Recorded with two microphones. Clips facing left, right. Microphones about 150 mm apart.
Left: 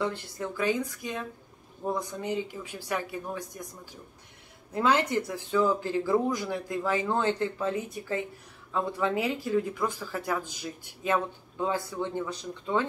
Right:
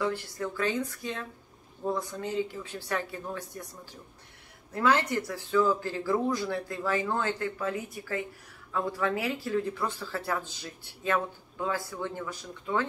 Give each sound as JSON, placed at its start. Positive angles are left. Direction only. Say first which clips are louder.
{"t": 0.0, "sound": "speech", "louder": "right 1 dB", "side_deg": 20}
{"t": 4.7, "sound": "speech", "louder": "left 1 dB", "side_deg": 20}